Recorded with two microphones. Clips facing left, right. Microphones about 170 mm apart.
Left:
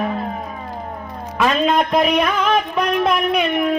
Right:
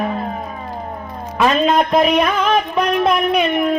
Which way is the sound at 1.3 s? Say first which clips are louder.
Right 2 dB; 35° right (ahead or behind).